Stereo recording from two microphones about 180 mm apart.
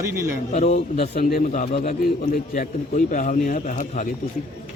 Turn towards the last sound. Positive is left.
turn(degrees=45)  # may be behind; listen again after turning